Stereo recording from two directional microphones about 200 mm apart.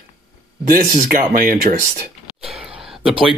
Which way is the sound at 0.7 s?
45° right (ahead or behind).